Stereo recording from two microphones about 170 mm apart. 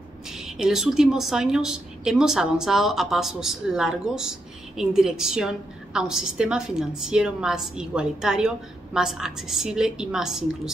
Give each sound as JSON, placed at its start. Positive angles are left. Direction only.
{"t": 0.3, "sound": "a woman's voice", "side_deg": -5}